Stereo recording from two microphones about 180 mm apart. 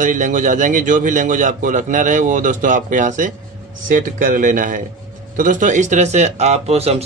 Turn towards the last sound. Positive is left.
turn(degrees=-35)  # may be behind; listen again after turning